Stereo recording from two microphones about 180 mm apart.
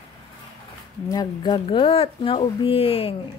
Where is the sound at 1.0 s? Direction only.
20° left (ahead or behind).